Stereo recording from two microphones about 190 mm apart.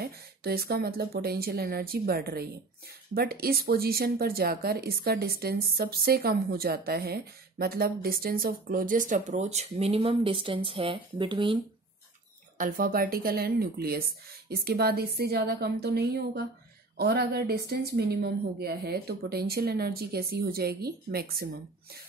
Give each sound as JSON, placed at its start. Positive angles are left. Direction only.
{"t": 0.0, "sound": "speech", "side_deg": -55}
{"t": 12.5, "sound": "speech", "side_deg": -45}